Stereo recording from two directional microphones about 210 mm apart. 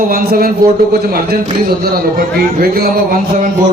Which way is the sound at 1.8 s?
45° right (ahead or behind).